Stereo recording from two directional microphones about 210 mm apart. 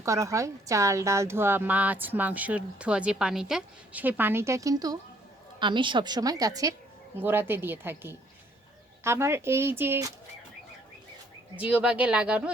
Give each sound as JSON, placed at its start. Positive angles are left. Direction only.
{"t": 0.0, "sound": "a woman's voice", "side_deg": -15}
{"t": 11.5, "sound": "a woman's voice", "side_deg": -5}